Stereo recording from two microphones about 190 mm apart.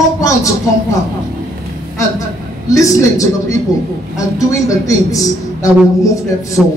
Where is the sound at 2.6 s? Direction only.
15° left (ahead or behind).